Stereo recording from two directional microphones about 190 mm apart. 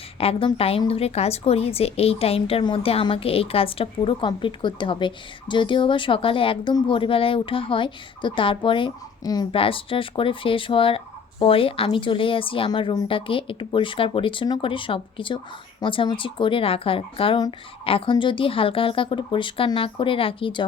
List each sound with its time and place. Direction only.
0.2 s a woman's voice: 30° left (ahead or behind)